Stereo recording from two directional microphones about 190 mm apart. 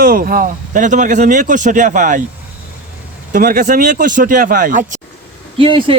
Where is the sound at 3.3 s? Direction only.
45° right (ahead or behind).